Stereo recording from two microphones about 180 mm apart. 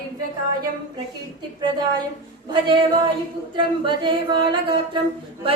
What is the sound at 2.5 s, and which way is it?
Singing, 25° right (ahead or behind).